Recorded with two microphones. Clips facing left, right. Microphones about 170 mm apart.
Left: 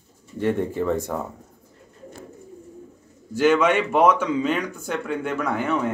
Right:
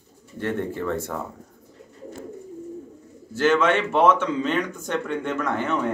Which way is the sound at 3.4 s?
15° left (ahead or behind).